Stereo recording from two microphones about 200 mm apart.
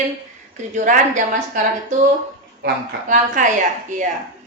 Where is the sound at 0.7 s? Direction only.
40° right (ahead or behind).